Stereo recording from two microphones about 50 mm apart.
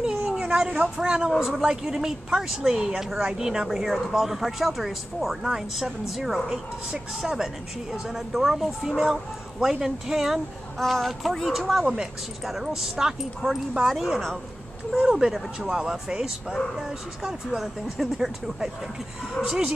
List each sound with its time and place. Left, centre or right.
0.2 s speech: centre
10.8 s speech: centre